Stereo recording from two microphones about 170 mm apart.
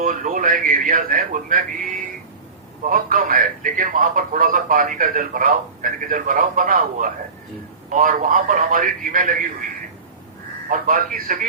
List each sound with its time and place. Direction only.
0.0 s a man's voice: 50° right (ahead or behind)
10.7 s a man's voice: 55° right (ahead or behind)